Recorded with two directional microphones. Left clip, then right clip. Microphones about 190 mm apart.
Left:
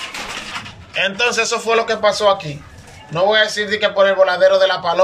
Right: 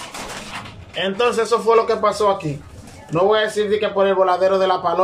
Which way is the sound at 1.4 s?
20° right (ahead or behind).